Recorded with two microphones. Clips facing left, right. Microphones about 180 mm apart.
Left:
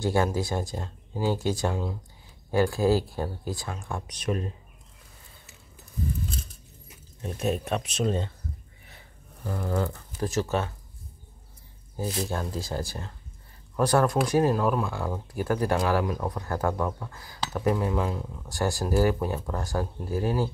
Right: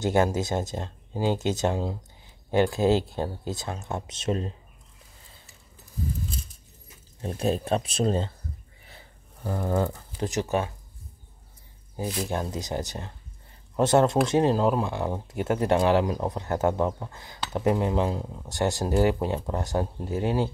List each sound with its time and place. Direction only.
0.0 s speech: 20° right (ahead or behind)
7.2 s speech: 30° right (ahead or behind)
8.8 s a sound: 35° right (ahead or behind)
10.1 s speech: 20° right (ahead or behind)
12.3 s speech: 20° right (ahead or behind)